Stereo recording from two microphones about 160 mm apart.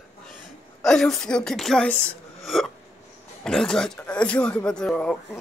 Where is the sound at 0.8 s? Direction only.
Centre (ahead or behind).